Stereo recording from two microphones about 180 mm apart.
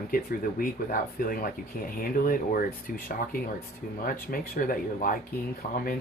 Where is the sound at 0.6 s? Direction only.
50° left (ahead or behind).